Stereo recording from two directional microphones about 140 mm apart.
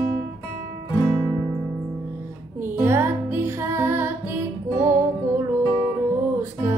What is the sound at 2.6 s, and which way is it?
Music, 15° right (ahead or behind).